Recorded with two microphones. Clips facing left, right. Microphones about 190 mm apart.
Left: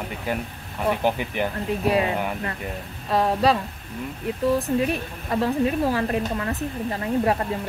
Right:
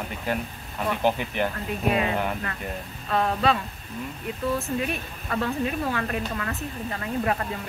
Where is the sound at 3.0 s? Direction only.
35° left (ahead or behind).